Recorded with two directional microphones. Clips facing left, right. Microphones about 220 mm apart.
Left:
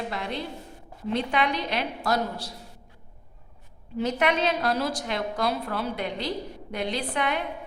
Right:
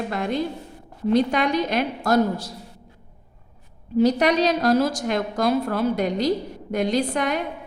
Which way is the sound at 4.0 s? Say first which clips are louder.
Right 7 dB; 40° right (ahead or behind).